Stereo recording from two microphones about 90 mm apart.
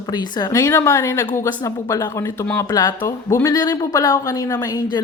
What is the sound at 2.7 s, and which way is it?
Speech, 45° left (ahead or behind).